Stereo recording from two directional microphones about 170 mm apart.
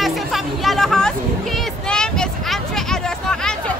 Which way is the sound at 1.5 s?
5° left (ahead or behind).